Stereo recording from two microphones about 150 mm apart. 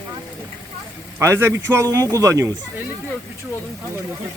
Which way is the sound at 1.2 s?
20° right (ahead or behind).